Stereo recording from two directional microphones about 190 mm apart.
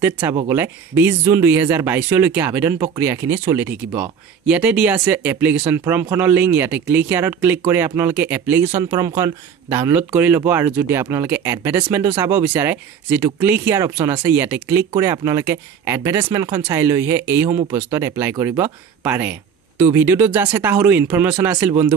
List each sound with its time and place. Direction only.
0.0 s speech: 15° right (ahead or behind)